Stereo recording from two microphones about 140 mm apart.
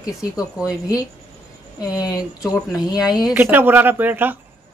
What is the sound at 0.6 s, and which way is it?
Speech, 5° right (ahead or behind).